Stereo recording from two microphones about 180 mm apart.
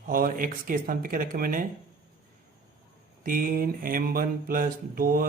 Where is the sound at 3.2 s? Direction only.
50° right (ahead or behind).